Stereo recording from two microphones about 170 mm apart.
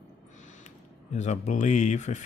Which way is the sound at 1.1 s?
45° left (ahead or behind).